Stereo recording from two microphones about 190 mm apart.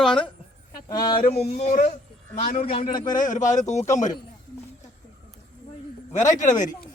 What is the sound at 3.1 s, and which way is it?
Speech, 45° left (ahead or behind).